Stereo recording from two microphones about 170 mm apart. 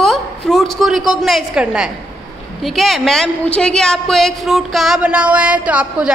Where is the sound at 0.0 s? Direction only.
Centre (ahead or behind).